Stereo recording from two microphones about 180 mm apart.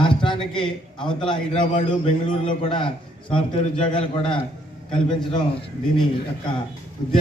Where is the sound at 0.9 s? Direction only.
25° left (ahead or behind).